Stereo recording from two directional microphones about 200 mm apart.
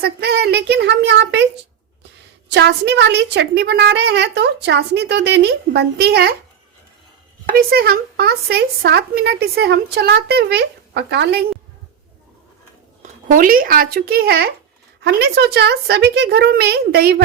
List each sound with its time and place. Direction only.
0.0 s a woman's voice: 55° right (ahead or behind)
2.5 s a woman's voice: 60° right (ahead or behind)
7.5 s speech: 50° right (ahead or behind)
13.0 s a woman's voice: 40° right (ahead or behind)